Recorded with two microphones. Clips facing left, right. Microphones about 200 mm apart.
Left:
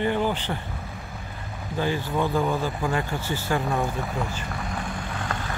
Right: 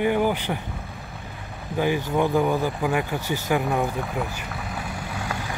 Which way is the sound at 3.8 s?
Centre (ahead or behind).